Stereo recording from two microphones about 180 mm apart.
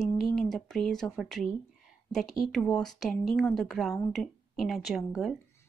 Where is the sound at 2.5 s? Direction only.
5° left (ahead or behind).